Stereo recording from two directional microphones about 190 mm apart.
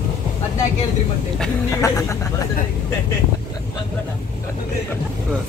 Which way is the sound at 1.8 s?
15° left (ahead or behind).